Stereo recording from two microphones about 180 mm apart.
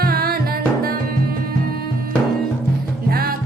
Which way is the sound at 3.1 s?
55° right (ahead or behind).